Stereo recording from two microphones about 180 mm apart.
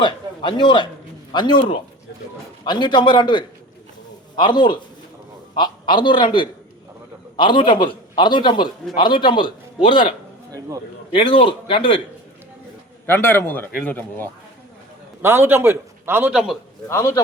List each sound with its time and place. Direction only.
0.0 s a man's voice: 25° left (ahead or behind)
7.3 s a man's voice: 25° left (ahead or behind)
13.1 s speech: 10° left (ahead or behind)
15.2 s a man's voice: 15° right (ahead or behind)
16.9 s speech: 15° left (ahead or behind)